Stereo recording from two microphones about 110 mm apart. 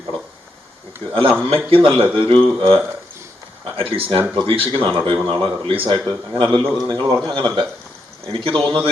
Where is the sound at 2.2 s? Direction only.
55° right (ahead or behind).